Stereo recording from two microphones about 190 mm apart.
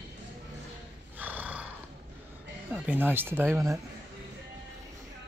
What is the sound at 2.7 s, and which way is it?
Speech, 10° right (ahead or behind).